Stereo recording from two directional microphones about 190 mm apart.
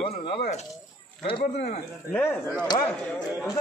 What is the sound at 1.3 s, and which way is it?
Speech, 35° left (ahead or behind).